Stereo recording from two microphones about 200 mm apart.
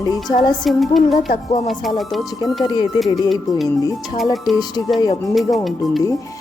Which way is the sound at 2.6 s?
20° left (ahead or behind).